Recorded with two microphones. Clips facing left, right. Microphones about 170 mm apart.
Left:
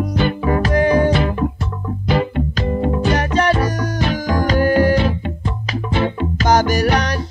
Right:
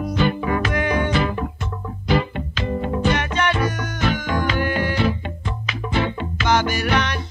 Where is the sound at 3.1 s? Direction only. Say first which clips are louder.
Left 5 dB; 35° left (ahead or behind).